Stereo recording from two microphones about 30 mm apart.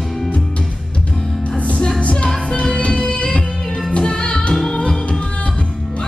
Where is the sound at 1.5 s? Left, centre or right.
Left.